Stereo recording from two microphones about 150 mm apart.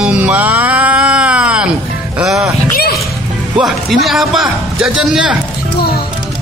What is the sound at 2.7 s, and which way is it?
Music, 90° left.